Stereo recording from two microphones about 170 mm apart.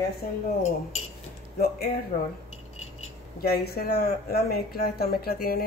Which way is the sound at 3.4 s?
65° left (ahead or behind).